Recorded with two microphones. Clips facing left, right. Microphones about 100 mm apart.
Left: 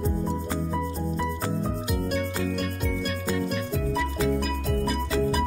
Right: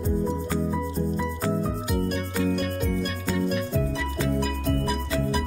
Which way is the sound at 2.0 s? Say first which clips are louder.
Right 1 dB; centre (ahead or behind).